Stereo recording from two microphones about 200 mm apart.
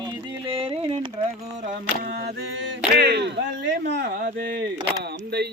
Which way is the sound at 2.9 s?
55° right (ahead or behind).